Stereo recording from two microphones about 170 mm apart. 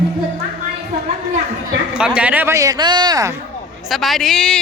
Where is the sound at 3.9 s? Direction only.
Centre (ahead or behind).